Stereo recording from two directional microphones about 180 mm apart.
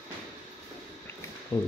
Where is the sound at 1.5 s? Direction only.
25° left (ahead or behind).